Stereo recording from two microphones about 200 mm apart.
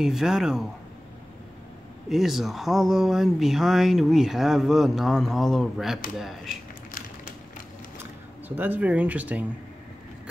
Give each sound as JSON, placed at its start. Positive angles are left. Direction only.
{"t": 0.0, "sound": "speech", "side_deg": 0}
{"t": 2.0, "sound": "speech", "side_deg": 0}
{"t": 8.0, "sound": "speech", "side_deg": -10}